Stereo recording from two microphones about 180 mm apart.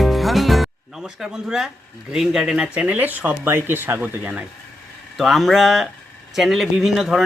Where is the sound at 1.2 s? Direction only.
5° right (ahead or behind).